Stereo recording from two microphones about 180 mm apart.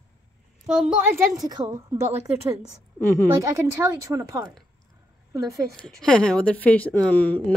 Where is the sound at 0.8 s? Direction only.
10° right (ahead or behind).